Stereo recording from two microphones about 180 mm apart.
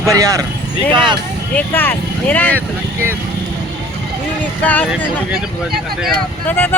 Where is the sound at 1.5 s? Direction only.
10° left (ahead or behind).